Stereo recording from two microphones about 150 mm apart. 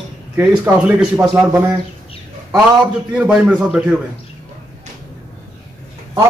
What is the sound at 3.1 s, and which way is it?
Speech, 10° right (ahead or behind).